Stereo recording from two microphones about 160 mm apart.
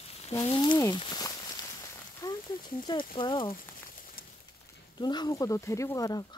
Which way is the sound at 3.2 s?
30° left (ahead or behind).